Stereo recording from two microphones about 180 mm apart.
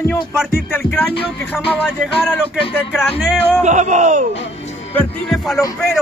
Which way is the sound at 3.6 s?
40° right (ahead or behind).